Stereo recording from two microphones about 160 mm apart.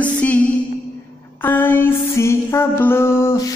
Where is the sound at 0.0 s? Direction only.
10° left (ahead or behind).